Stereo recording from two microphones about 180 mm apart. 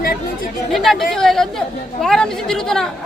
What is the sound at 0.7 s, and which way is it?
Speech, centre (ahead or behind).